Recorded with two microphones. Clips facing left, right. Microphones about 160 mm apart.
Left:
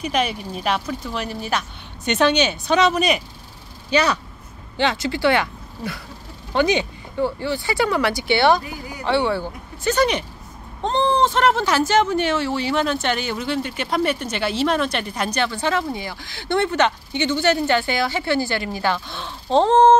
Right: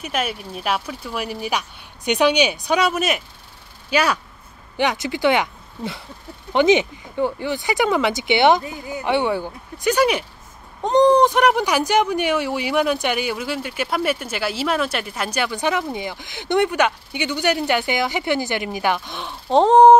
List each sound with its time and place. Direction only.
0.0 s speech: 5° right (ahead or behind)